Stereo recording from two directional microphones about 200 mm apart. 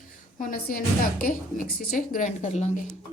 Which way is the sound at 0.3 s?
45° left (ahead or behind).